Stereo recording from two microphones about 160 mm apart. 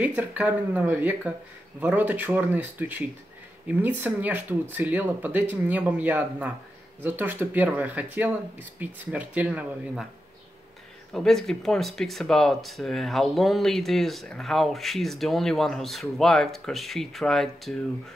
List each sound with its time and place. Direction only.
0.0 s speech: 10° right (ahead or behind)
11.1 s speech: centre (ahead or behind)